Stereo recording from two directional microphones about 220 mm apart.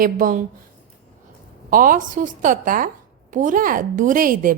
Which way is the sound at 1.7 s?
40° right (ahead or behind).